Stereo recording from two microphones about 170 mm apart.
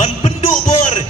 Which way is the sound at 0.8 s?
40° left (ahead or behind).